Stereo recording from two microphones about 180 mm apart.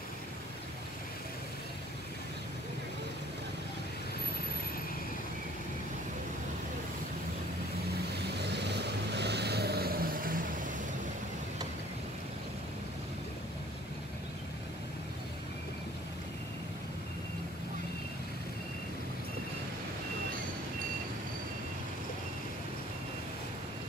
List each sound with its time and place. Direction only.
8.3 s vehicle: 70° right (ahead or behind); by 10.4 s 50° right (ahead or behind)